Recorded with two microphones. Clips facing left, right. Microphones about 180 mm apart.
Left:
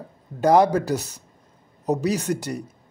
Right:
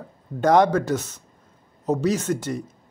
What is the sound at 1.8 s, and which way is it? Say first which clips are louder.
Speech: right 1 dB; 15° left (ahead or behind).